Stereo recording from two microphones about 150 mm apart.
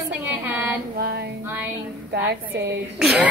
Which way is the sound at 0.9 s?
90° right.